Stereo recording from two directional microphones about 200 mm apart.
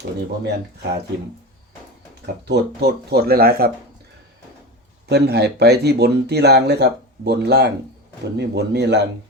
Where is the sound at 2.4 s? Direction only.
55° right (ahead or behind).